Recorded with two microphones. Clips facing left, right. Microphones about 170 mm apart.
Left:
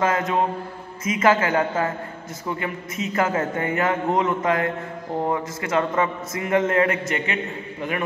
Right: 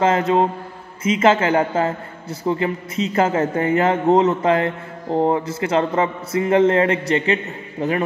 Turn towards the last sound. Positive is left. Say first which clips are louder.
# right 5 dB
turn(degrees=-35)  # may be behind; listen again after turning